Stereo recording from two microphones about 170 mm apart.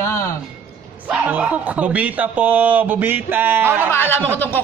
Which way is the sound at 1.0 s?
10° right (ahead or behind).